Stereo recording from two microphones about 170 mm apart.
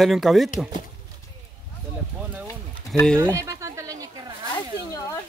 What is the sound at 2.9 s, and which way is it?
Speech, 5° left (ahead or behind).